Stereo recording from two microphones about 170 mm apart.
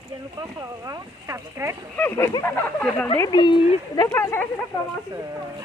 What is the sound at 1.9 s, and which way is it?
Speech, 15° left (ahead or behind).